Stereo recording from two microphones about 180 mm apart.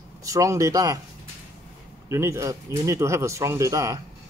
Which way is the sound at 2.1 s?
15° right (ahead or behind).